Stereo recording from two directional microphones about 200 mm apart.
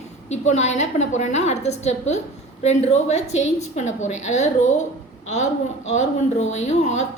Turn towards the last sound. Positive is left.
turn(degrees=35)  # may be behind; listen again after turning